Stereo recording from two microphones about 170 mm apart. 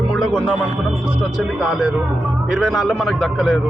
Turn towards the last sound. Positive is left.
turn(degrees=0)  # may be behind; listen again after turning